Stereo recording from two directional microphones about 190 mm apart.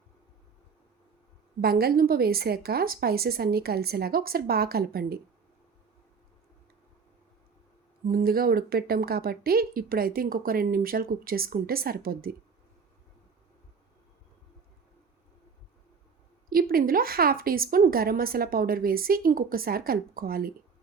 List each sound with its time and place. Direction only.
1.6 s a woman's voice: 50° right (ahead or behind)
8.0 s a woman's voice: 50° right (ahead or behind)
16.5 s a woman's voice: 50° right (ahead or behind)